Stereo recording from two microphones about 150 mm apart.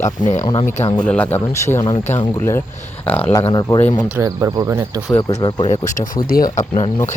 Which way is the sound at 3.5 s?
25° left (ahead or behind).